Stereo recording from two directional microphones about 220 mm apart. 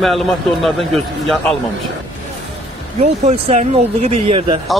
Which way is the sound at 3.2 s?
30° right (ahead or behind).